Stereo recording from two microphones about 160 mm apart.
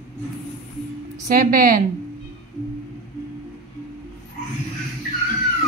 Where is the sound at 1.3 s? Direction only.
60° right (ahead or behind).